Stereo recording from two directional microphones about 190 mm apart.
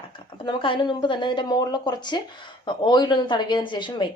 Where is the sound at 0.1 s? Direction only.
25° left (ahead or behind).